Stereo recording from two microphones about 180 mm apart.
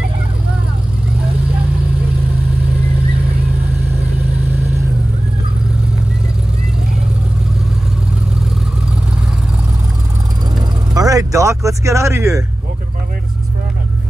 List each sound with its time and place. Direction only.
11.0 s speech: 20° right (ahead or behind)